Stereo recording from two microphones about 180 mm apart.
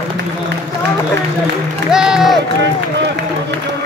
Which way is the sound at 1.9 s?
5° right (ahead or behind).